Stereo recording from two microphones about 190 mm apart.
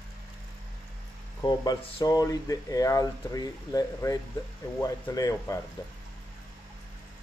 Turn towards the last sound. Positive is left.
turn(degrees=20)  # may be behind; listen again after turning